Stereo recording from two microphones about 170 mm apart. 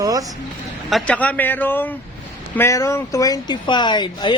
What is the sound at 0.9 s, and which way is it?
A man's voice, 5° left (ahead or behind).